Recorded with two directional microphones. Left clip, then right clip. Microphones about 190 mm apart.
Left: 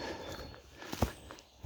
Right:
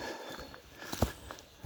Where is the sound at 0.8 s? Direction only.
55° right (ahead or behind).